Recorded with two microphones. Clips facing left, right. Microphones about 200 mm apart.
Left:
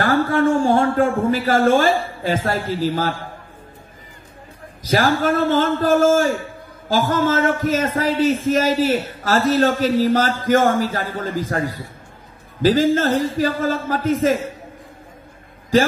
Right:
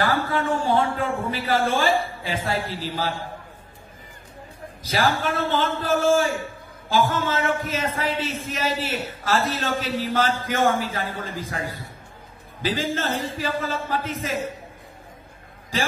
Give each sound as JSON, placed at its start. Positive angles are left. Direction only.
{"t": 0.0, "sound": "a man's voice", "side_deg": 45}
{"t": 4.8, "sound": "a man's voice", "side_deg": 45}